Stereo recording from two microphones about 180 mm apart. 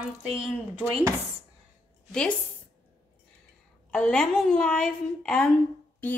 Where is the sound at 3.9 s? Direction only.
5° left (ahead or behind).